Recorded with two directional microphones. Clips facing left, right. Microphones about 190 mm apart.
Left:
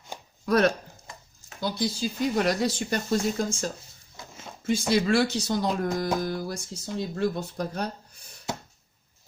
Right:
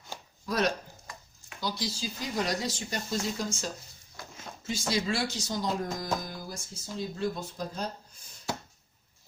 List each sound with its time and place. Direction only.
0.4 s speech: 65° left (ahead or behind)